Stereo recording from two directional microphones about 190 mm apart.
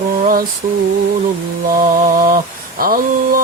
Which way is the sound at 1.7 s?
45° right (ahead or behind).